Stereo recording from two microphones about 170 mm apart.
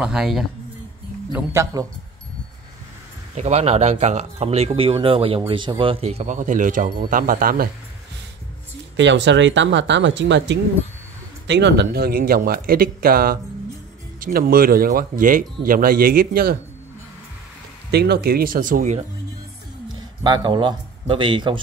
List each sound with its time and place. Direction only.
0.0 s speech: 5° right (ahead or behind)
1.3 s speech: 15° right (ahead or behind)
3.3 s speech: 40° right (ahead or behind); by 7.7 s 60° right (ahead or behind)
8.9 s speech: 90° right; by 16.5 s 60° right (ahead or behind)
17.9 s speech: 75° right (ahead or behind); by 19.0 s 45° right (ahead or behind)
19.9 s a man's voice: 25° right (ahead or behind)